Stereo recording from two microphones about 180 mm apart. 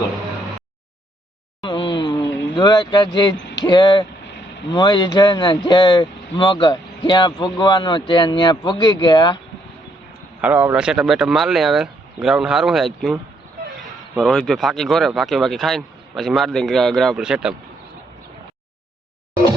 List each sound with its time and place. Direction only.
1.6 s a sound: 25° left (ahead or behind)
3.6 s speech: 25° left (ahead or behind)
10.4 s speech: 10° right (ahead or behind)
14.2 s speech: centre (ahead or behind)